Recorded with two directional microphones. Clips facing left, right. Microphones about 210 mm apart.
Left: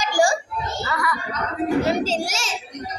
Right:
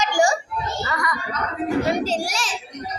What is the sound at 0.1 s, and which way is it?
Children playing, 30° left (ahead or behind).